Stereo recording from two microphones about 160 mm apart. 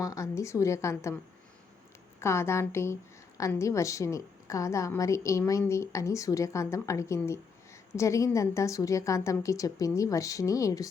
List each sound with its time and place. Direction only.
0.0 s a woman's voice: 20° left (ahead or behind)